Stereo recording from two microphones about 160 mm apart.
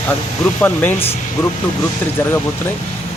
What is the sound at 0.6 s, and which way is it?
Speech, 10° left (ahead or behind).